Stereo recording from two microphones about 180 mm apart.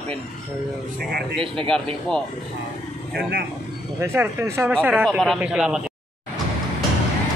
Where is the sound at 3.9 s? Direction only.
15° right (ahead or behind).